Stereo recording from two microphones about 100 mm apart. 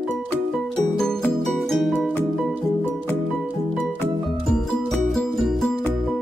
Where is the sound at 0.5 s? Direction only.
5° left (ahead or behind).